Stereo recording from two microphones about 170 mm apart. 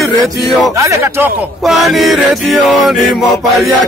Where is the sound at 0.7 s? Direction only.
15° right (ahead or behind).